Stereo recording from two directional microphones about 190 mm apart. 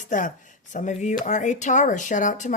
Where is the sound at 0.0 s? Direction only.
40° left (ahead or behind).